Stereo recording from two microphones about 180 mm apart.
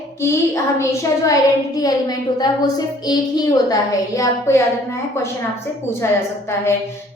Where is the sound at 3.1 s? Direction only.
20° left (ahead or behind).